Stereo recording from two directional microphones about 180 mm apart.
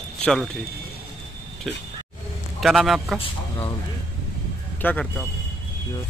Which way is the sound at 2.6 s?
Centre (ahead or behind).